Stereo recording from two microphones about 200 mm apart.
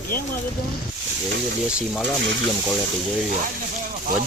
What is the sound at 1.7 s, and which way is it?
Speech, 5° right (ahead or behind).